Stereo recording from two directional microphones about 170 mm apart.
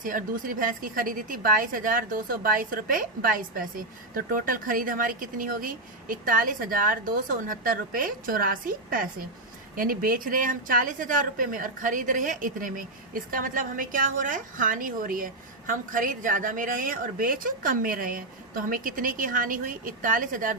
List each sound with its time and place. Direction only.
0.0 s a woman's voice: 50° right (ahead or behind)